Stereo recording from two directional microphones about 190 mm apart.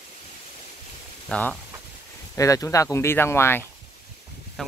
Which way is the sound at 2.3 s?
15° left (ahead or behind).